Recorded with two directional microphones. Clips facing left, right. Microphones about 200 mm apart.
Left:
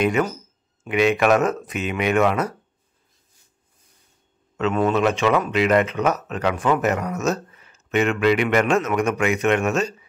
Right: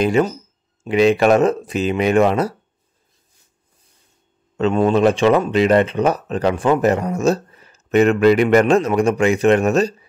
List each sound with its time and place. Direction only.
0.0 s speech: 30° right (ahead or behind)
4.6 s speech: 30° right (ahead or behind)